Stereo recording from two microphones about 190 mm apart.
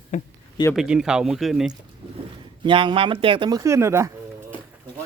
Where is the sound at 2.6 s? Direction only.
25° right (ahead or behind).